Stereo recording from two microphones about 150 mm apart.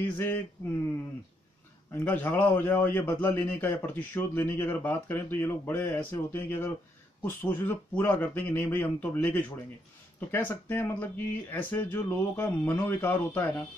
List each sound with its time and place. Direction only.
0.0 s a man's voice: 15° left (ahead or behind)
2.0 s a man's voice: 15° left (ahead or behind)